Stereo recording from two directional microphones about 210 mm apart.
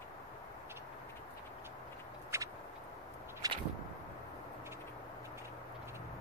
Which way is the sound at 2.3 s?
15° right (ahead or behind).